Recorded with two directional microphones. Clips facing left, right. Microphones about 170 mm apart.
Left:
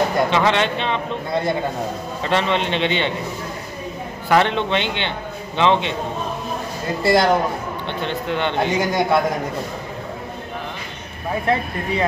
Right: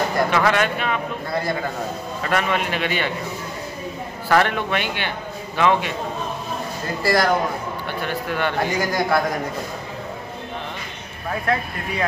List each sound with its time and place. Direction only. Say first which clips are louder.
0.3 s a man's voice: left 1 dB; 20° left (ahead or behind)
4.3 s a man's voice: left 2 dB; 20° left (ahead or behind)
7.0 s a man's voice: left 3 dB; 25° left (ahead or behind)
11.4 s a man's voice: left 3 dB; 25° left (ahead or behind)